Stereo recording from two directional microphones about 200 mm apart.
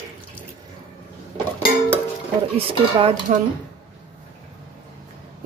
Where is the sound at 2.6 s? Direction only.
25° right (ahead or behind).